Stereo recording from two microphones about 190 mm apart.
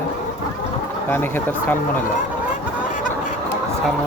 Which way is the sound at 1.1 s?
10° left (ahead or behind).